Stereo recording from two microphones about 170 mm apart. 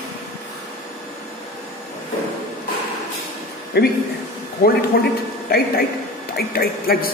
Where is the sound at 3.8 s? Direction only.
70° left (ahead or behind).